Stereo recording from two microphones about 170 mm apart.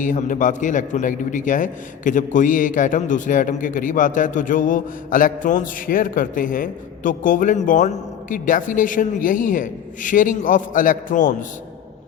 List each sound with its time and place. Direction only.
0.0 s a man's voice: 50° left (ahead or behind)